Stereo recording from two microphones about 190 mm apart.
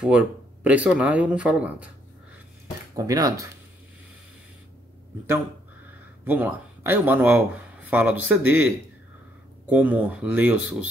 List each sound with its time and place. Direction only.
0.7 s speech: 5° right (ahead or behind)
3.0 s speech: 20° right (ahead or behind)
6.2 s speech: 10° right (ahead or behind)